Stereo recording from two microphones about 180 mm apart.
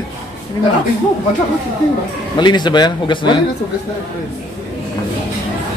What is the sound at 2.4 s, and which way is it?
Speech, 25° left (ahead or behind).